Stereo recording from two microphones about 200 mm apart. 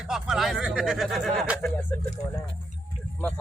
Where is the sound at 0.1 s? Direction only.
Centre (ahead or behind).